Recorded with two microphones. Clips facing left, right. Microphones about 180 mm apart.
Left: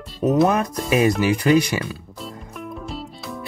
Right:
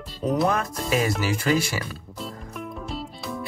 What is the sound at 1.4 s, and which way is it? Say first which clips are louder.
Speech: left 6 dB; 15° left (ahead or behind).